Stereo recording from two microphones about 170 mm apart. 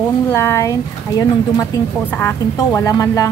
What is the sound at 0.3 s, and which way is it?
A woman's voice, 15° left (ahead or behind).